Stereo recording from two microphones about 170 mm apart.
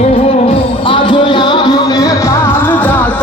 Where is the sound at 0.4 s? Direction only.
30° left (ahead or behind).